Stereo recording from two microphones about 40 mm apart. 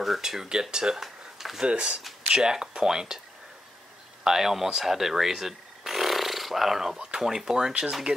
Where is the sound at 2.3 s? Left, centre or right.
Centre.